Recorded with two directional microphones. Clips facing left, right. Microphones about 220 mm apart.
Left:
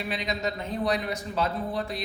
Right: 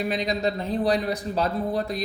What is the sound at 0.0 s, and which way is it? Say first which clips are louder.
Speech: right 6 dB; 40° right (ahead or behind).